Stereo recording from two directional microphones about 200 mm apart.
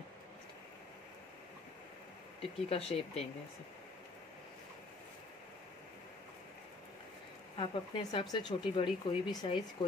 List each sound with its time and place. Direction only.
2.4 s speech: 30° left (ahead or behind)
7.5 s speech: 25° left (ahead or behind)